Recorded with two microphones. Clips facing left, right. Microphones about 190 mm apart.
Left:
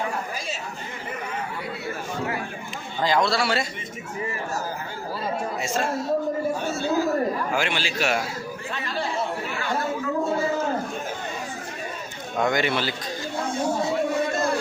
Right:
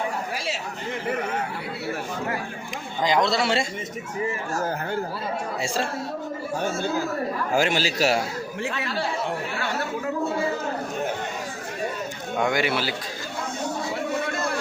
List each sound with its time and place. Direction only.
3.0 s a man's voice: 20° right (ahead or behind)
7.5 s a man's voice: 40° right (ahead or behind)
12.4 s speech: 10° right (ahead or behind)